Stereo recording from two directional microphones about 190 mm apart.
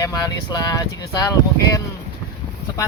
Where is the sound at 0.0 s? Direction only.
20° left (ahead or behind).